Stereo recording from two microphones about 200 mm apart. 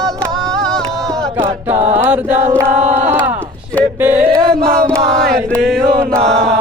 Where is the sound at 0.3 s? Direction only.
Centre (ahead or behind).